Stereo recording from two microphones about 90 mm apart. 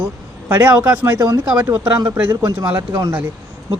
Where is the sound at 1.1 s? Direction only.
45° right (ahead or behind).